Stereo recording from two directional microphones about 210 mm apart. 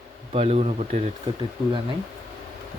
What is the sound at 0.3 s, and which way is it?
Speech, 30° right (ahead or behind).